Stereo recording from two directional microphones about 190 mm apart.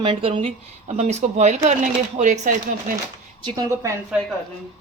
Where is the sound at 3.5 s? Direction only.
20° right (ahead or behind).